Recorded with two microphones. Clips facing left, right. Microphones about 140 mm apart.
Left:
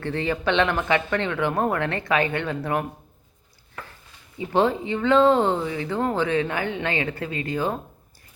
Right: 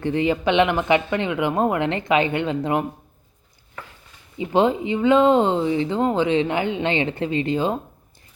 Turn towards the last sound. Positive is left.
turn(degrees=-20)  # may be behind; listen again after turning